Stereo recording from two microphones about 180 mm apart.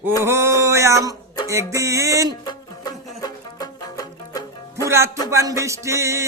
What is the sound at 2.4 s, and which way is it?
Music, 20° left (ahead or behind).